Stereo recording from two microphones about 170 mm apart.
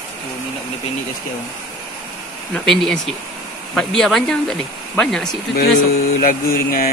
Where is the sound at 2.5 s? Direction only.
5° left (ahead or behind).